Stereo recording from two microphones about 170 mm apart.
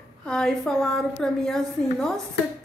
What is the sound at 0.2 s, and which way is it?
A woman's voice, 5° left (ahead or behind).